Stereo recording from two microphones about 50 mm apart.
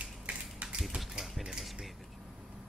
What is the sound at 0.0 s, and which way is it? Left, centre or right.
Tap, right.